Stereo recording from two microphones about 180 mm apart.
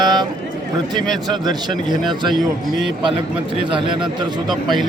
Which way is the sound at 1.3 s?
25° right (ahead or behind).